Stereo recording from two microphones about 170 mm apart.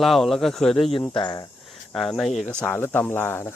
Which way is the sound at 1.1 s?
30° left (ahead or behind).